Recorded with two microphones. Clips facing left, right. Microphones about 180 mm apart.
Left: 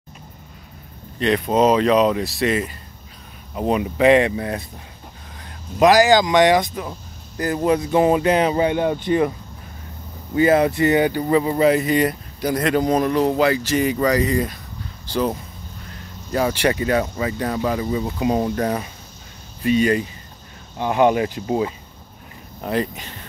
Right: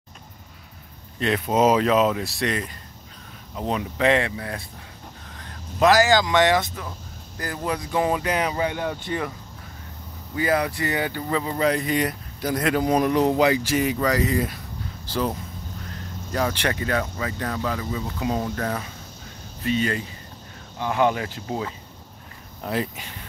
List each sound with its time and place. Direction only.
1.2 s speech: 5° right (ahead or behind); by 9.3 s 20° left (ahead or behind)
10.3 s speech: 25° left (ahead or behind); by 13.7 s 15° right (ahead or behind)
13.7 s speech: centre (ahead or behind); by 21.7 s 15° left (ahead or behind)
22.6 s speech: 5° right (ahead or behind)